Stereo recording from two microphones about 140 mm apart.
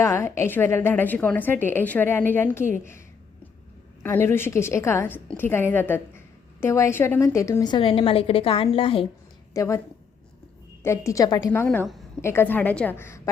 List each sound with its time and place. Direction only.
0.0 s a woman's voice: 20° left (ahead or behind)
4.0 s a woman's voice: 15° left (ahead or behind); by 9.0 s 40° left (ahead or behind)
9.6 s a woman's voice: 20° left (ahead or behind)
10.8 s a woman's voice: 20° left (ahead or behind)